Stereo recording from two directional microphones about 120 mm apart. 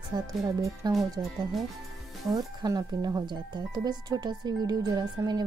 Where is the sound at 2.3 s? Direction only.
30° right (ahead or behind).